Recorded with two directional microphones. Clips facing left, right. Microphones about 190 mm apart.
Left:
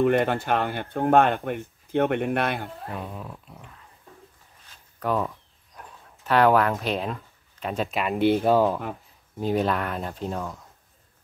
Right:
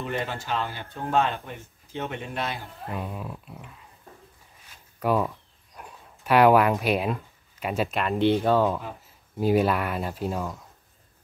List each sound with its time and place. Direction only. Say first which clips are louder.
0.0 s speech: left 10 dB; 60° left (ahead or behind)
2.9 s speech: right 1 dB; 5° right (ahead or behind)
5.0 s speech: right 2 dB; 10° right (ahead or behind)
7.9 s speech: left 2 dB; 5° left (ahead or behind)
9.4 s speech: right 2 dB; 5° right (ahead or behind)